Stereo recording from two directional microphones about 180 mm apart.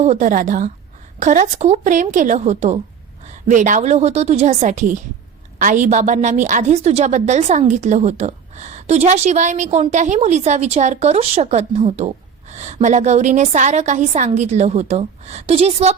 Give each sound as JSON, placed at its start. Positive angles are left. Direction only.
{"t": 0.0, "sound": "a woman's voice", "side_deg": -40}